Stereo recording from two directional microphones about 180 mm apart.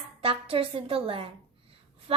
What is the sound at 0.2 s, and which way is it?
A woman's voice, 30° right (ahead or behind).